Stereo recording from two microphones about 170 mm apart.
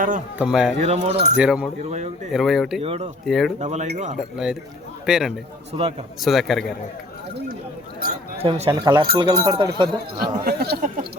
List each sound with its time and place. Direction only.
0.3 s a man's voice: 5° right (ahead or behind)
0.8 s speech: 40° right (ahead or behind)
1.4 s a man's voice: 5° right (ahead or behind)
1.8 s speech: 40° right (ahead or behind)
2.3 s a man's voice: centre (ahead or behind)
2.8 s speech: 35° right (ahead or behind)
3.2 s a man's voice: centre (ahead or behind)
3.6 s speech: 40° right (ahead or behind)
4.2 s a man's voice: 5° right (ahead or behind)
8.4 s speech: 35° right (ahead or behind)
8.7 s speech: 25° right (ahead or behind)
10.4 s speech: 65° right (ahead or behind)